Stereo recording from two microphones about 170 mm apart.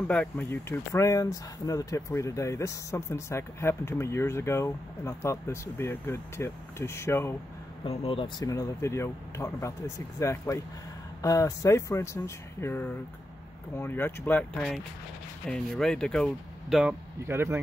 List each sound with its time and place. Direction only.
0.1 s speech: 10° left (ahead or behind)
7.8 s speech: 35° left (ahead or behind)
8.5 s speech: 20° left (ahead or behind)
17.3 s speech: 15° right (ahead or behind)